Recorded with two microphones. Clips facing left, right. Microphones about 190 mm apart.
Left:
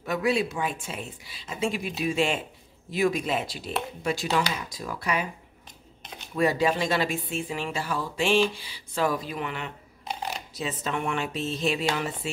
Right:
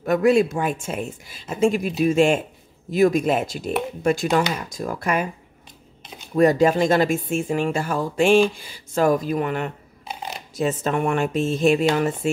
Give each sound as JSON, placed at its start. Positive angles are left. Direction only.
{"t": 0.0, "sound": "speech", "side_deg": -50}
{"t": 6.3, "sound": "speech", "side_deg": -45}